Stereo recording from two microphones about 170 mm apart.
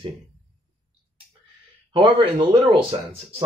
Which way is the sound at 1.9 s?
30° right (ahead or behind).